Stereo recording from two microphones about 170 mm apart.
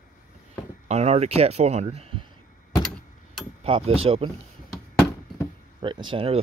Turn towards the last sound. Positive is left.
turn(degrees=-30)  # may be behind; listen again after turning